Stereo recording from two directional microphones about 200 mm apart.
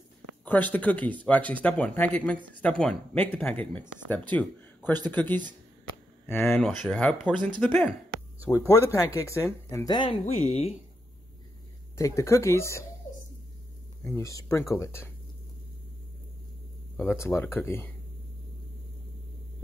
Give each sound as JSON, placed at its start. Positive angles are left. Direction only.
{"t": 0.5, "sound": "speech", "side_deg": 10}
{"t": 8.5, "sound": "speech", "side_deg": 20}
{"t": 12.0, "sound": "speech", "side_deg": 15}
{"t": 14.1, "sound": "speech", "side_deg": 15}
{"t": 16.9, "sound": "speech", "side_deg": 10}